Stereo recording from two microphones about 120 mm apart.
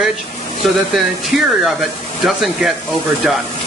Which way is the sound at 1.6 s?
Centre (ahead or behind).